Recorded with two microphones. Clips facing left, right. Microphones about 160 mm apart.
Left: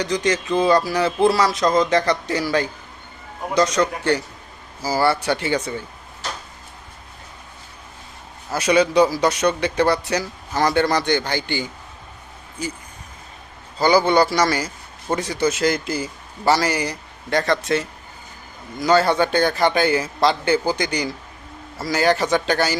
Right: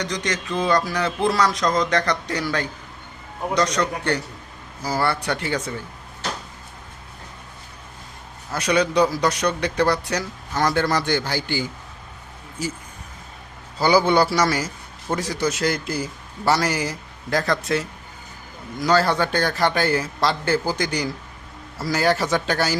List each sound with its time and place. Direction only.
0.0 s a man's voice: 5° left (ahead or behind)
8.5 s a man's voice: 5° left (ahead or behind)
13.7 s a man's voice: 10° right (ahead or behind)